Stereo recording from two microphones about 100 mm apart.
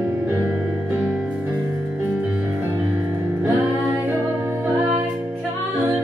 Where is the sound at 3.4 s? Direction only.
20° right (ahead or behind).